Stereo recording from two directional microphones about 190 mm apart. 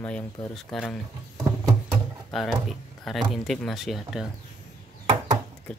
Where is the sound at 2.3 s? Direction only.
Centre (ahead or behind).